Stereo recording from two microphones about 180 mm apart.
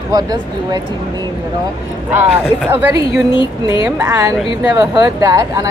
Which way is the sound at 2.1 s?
10° right (ahead or behind).